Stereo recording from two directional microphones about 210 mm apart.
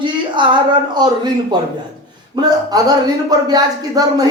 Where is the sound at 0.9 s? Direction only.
20° right (ahead or behind).